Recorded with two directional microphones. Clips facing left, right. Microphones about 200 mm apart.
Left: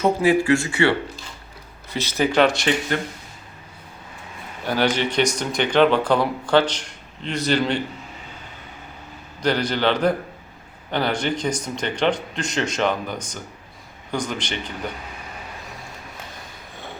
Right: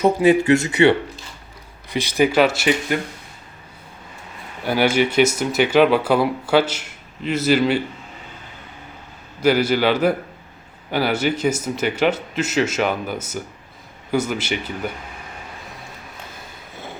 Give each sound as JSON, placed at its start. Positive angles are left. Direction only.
{"t": 0.0, "sound": "speech", "side_deg": -20}
{"t": 4.6, "sound": "speech", "side_deg": -10}
{"t": 9.4, "sound": "speech", "side_deg": -5}